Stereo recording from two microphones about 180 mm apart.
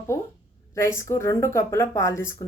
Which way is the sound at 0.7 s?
15° left (ahead or behind).